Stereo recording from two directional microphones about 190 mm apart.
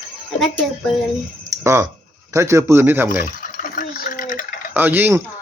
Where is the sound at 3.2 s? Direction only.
45° left (ahead or behind).